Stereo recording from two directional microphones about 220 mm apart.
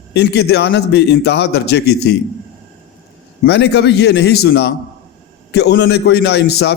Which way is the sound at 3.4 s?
50° left (ahead or behind).